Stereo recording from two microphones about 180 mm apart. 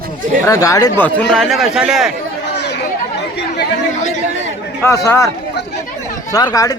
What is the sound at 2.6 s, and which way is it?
Chatter, 70° left (ahead or behind).